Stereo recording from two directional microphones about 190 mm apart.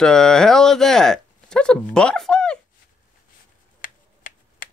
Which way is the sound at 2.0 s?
5° left (ahead or behind).